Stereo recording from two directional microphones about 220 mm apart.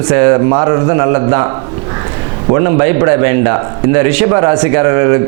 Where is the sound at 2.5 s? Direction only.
20° right (ahead or behind).